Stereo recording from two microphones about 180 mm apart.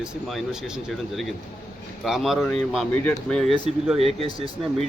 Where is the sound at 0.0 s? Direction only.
Centre (ahead or behind).